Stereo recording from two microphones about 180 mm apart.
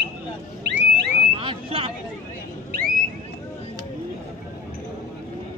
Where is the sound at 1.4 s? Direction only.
30° right (ahead or behind).